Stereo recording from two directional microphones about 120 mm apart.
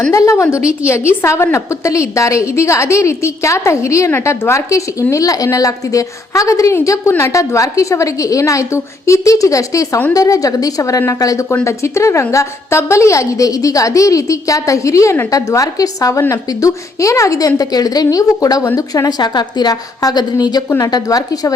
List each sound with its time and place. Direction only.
0.1 s a woman's voice: 25° left (ahead or behind)
0.6 s a woman's voice: 10° right (ahead or behind)
0.9 s a woman's voice: 20° left (ahead or behind)